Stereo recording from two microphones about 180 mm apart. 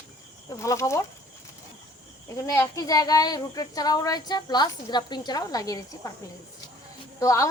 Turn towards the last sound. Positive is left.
turn(degrees=15)  # may be behind; listen again after turning